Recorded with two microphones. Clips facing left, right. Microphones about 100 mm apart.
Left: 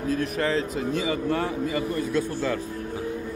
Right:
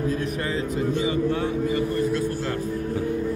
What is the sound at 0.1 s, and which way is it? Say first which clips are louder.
Speech: left 2 dB; 85° left.